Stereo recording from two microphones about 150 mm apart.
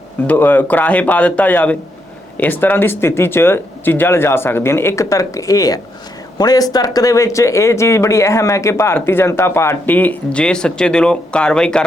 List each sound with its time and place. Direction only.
0.3 s speech: 10° left (ahead or behind)